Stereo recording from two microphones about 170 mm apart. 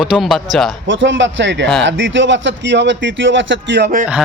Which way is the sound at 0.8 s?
90° right.